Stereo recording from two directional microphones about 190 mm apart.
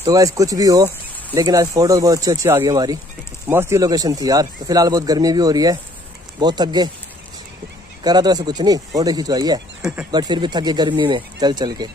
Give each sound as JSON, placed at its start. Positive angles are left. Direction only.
{"t": 0.0, "sound": "speech", "side_deg": -15}
{"t": 8.0, "sound": "speech", "side_deg": -20}
{"t": 9.8, "sound": "speech", "side_deg": -5}
{"t": 10.1, "sound": "speech", "side_deg": -25}